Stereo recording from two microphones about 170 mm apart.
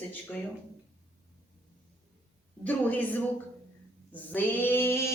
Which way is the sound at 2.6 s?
10° left (ahead or behind).